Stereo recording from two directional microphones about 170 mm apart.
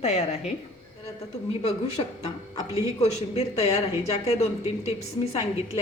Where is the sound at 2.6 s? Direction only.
15° right (ahead or behind).